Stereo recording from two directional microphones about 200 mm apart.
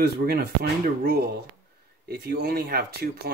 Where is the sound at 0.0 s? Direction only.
50° right (ahead or behind).